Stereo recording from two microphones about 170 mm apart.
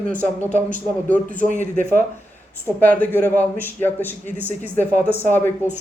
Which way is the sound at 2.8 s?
10° left (ahead or behind).